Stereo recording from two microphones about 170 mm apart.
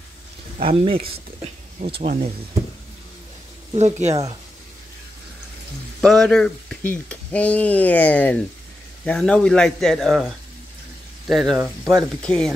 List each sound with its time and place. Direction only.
0.6 s speech: 35° right (ahead or behind)
2.0 s speech: 35° right (ahead or behind)
3.7 s speech: 40° right (ahead or behind)
5.9 s a man's voice: 5° left (ahead or behind)
11.2 s a man's voice: centre (ahead or behind)